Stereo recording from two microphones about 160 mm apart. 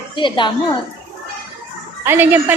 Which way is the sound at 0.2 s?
30° left (ahead or behind).